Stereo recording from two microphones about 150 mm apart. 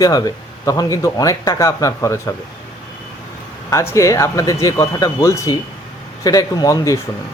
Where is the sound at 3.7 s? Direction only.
20° left (ahead or behind).